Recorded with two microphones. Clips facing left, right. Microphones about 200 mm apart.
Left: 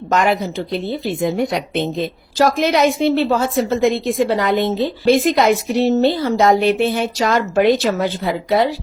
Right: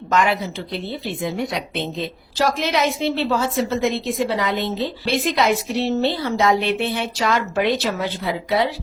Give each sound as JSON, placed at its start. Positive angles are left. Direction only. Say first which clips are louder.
{"t": 0.1, "sound": "a woman's voice", "louder": "left 3 dB", "side_deg": 45}